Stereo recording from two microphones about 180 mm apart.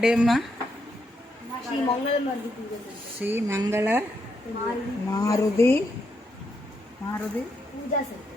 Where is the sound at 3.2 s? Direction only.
10° right (ahead or behind).